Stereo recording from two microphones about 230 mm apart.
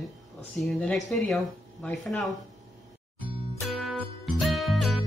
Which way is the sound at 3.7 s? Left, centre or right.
Centre.